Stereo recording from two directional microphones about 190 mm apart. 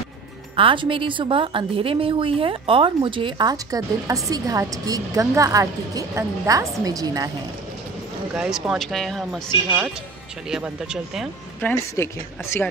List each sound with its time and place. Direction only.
0.6 s a woman's voice: 25° right (ahead or behind)
8.4 s speech: centre (ahead or behind)
10.5 s speech: 5° right (ahead or behind)
11.9 s a woman's voice: 15° left (ahead or behind)